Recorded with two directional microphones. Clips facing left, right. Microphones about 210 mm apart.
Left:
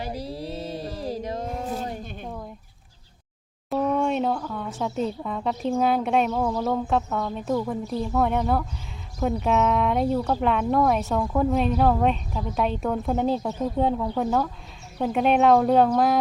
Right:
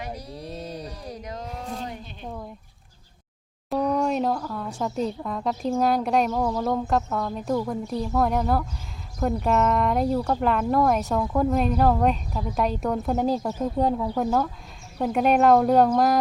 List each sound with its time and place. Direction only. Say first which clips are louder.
0.3 s mantra: left 3 dB; 5° left (ahead or behind)
0.8 s mantra: left 6 dB; 30° left (ahead or behind)
3.7 s speech: even; centre (ahead or behind)